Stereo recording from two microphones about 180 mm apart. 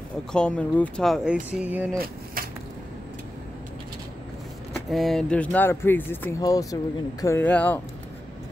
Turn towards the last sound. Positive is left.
turn(degrees=10)  # may be behind; listen again after turning